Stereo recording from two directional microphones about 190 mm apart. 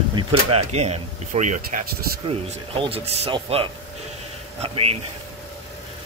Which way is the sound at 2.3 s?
30° right (ahead or behind).